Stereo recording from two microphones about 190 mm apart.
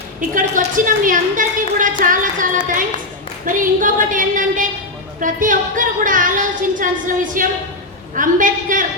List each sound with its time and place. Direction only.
0.2 s a woman's voice: 45° right (ahead or behind)